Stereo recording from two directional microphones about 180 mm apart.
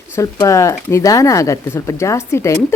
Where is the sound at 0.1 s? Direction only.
20° left (ahead or behind).